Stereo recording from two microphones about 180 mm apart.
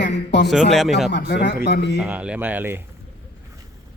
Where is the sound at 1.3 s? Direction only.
70° left (ahead or behind).